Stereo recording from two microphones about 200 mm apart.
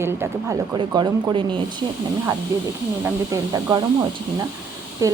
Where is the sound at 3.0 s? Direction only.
15° right (ahead or behind).